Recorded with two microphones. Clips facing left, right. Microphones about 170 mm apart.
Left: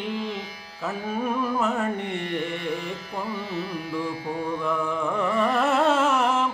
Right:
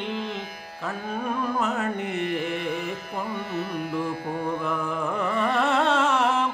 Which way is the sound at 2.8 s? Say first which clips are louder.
Right 1 dB; 50° right (ahead or behind).